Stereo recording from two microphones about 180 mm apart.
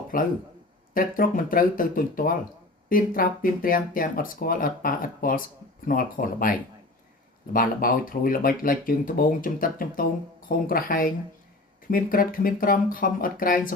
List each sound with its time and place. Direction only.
0.1 s speech: 50° left (ahead or behind)
7.5 s speech: 50° left (ahead or behind)